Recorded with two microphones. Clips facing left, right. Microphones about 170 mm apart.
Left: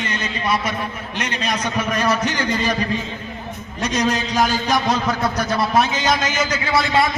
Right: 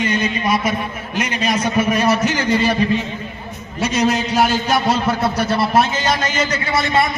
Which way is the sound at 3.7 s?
5° right (ahead or behind).